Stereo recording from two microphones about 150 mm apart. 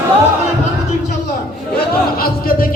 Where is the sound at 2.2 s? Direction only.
80° left.